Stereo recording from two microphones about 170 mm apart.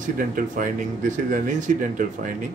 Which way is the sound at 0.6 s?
50° right (ahead or behind).